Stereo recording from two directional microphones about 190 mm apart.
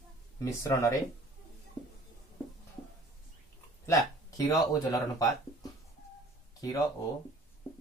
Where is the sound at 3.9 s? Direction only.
20° left (ahead or behind).